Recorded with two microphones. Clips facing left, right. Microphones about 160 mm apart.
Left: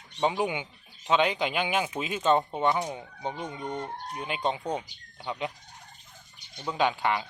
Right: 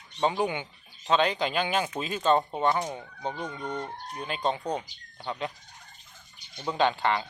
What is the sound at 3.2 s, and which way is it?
A man's voice, 20° left (ahead or behind).